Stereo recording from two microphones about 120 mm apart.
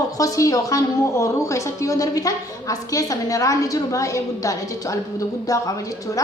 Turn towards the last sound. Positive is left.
turn(degrees=30)  # may be behind; listen again after turning